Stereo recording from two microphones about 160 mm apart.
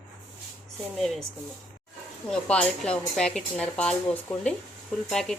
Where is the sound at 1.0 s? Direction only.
Centre (ahead or behind).